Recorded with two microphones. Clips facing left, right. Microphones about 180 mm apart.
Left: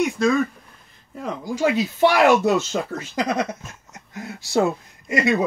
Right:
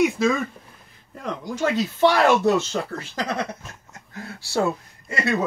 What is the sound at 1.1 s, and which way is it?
Speech, 5° left (ahead or behind).